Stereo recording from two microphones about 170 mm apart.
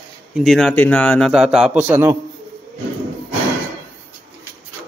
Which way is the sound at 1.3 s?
5° right (ahead or behind).